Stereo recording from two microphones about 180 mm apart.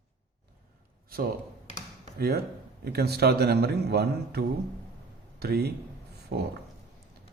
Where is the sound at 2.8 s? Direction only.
60° right (ahead or behind).